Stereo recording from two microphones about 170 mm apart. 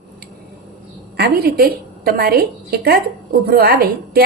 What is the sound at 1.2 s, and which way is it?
A woman's voice, 65° right (ahead or behind).